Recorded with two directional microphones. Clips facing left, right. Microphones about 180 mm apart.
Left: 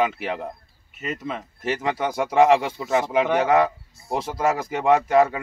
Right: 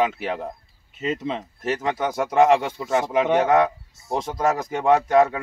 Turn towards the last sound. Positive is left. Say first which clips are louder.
# even
turn(degrees=0)  # may be behind; listen again after turning